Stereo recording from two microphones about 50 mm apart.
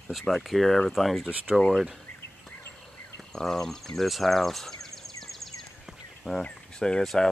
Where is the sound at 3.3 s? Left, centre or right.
Centre.